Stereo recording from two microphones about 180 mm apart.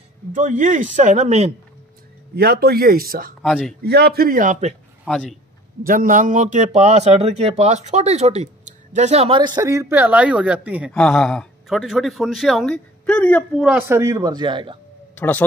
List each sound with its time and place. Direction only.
0.3 s speech: 45° right (ahead or behind)
2.3 s speech: 60° right (ahead or behind)
3.4 s speech: centre (ahead or behind)
3.8 s speech: 60° right (ahead or behind); by 4.7 s 40° right (ahead or behind)
5.0 s speech: centre (ahead or behind)
5.9 s speech: 50° right (ahead or behind); by 9.5 s 30° right (ahead or behind)
9.6 s speech: 15° right (ahead or behind)
10.9 s speech: 5° left (ahead or behind)
13.7 s speech: 10° right (ahead or behind)
15.1 s speech: 10° left (ahead or behind)